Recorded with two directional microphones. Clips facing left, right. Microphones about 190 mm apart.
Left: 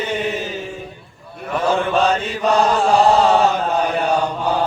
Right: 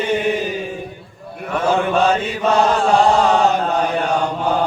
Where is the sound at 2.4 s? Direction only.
Centre (ahead or behind).